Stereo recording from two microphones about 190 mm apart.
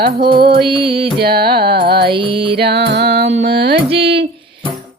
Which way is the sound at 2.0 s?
25° right (ahead or behind).